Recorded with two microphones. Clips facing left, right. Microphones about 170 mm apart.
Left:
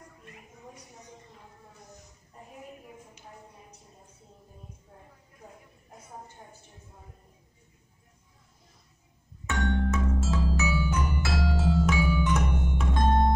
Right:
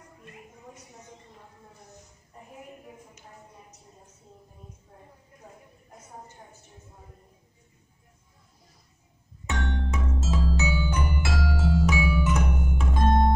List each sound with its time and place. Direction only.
9.5 s music: 20° right (ahead or behind)
11.3 s music: 15° left (ahead or behind)
11.9 s music: 10° right (ahead or behind)